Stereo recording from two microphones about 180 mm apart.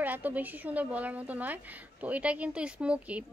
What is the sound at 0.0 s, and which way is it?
A woman's voice, 10° right (ahead or behind).